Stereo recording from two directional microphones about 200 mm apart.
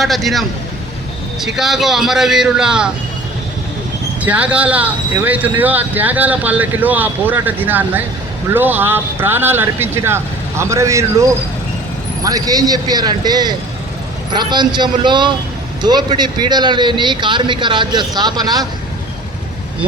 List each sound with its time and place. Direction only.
0.0 s speech: centre (ahead or behind)
4.2 s speech: 5° right (ahead or behind)
12.2 s a man's voice: 20° right (ahead or behind)